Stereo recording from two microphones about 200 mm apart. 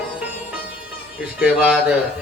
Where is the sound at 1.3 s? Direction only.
5° right (ahead or behind).